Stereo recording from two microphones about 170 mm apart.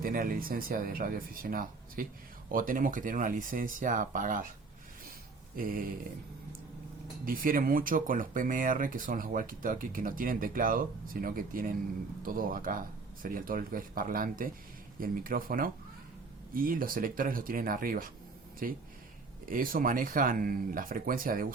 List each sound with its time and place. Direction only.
0.0 s speech: 55° right (ahead or behind)
5.5 s speech: 55° right (ahead or behind)
7.3 s speech: 55° right (ahead or behind)